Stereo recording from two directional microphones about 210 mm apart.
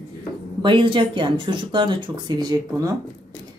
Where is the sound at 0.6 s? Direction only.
25° right (ahead or behind).